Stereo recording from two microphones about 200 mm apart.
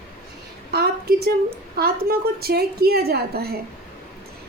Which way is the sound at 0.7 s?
50° right (ahead or behind).